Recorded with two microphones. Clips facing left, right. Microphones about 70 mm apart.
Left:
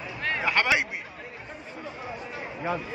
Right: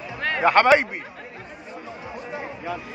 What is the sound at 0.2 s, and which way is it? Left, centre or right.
Speech, right.